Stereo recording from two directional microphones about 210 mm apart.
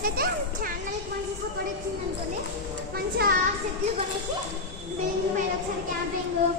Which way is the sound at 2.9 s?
45° right (ahead or behind).